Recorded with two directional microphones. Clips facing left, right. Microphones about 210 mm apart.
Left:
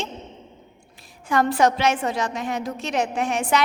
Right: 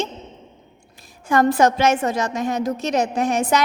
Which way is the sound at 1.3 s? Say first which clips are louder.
Right 3 dB; 45° right (ahead or behind).